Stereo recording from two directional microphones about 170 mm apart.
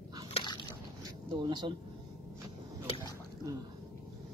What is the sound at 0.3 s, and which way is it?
Biting, 25° left (ahead or behind).